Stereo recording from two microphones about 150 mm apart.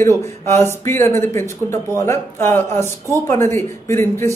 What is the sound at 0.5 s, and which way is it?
Speech, 15° left (ahead or behind).